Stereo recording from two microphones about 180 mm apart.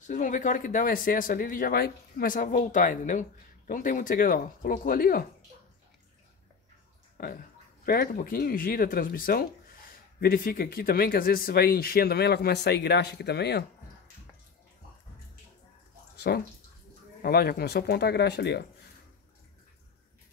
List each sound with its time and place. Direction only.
0.0 s speech: 45° left (ahead or behind)
7.2 s speech: 55° left (ahead or behind)
16.2 s speech: 60° left (ahead or behind)